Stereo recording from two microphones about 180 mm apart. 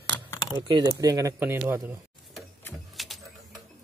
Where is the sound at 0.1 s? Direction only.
15° left (ahead or behind).